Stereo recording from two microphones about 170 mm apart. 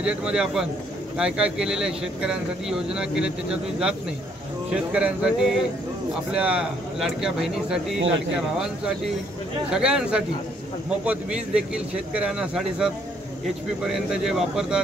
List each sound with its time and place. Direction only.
0.0 s speech: 5° right (ahead or behind)